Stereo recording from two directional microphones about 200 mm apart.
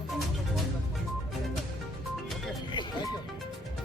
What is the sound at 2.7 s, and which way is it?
Music, 20° left (ahead or behind).